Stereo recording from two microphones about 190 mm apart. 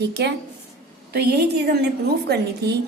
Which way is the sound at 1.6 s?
60° right (ahead or behind).